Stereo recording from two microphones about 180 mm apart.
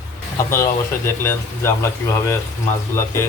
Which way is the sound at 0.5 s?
15° left (ahead or behind).